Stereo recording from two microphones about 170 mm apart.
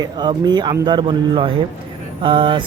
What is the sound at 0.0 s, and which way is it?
Speech, 25° right (ahead or behind).